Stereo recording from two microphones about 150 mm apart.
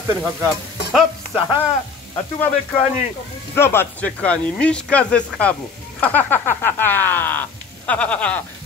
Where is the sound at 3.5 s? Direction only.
15° left (ahead or behind).